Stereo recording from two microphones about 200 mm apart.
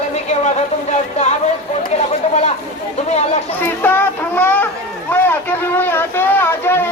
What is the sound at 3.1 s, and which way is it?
Chatter, 35° left (ahead or behind).